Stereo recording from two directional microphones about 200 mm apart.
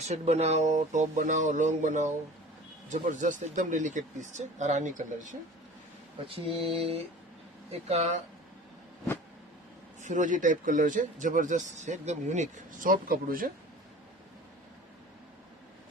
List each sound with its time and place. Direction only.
0.1 s speech: 35° right (ahead or behind)
6.2 s mantra: 30° right (ahead or behind)
7.7 s speech: 35° right (ahead or behind)
10.0 s speech: 40° right (ahead or behind)